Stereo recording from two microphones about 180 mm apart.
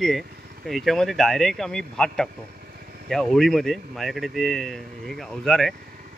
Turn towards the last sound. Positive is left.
turn(degrees=5)  # may be behind; listen again after turning